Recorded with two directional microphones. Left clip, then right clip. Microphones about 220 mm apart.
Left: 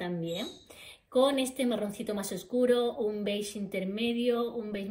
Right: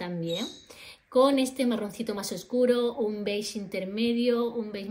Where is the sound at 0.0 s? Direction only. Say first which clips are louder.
Right 3 dB; 35° right (ahead or behind).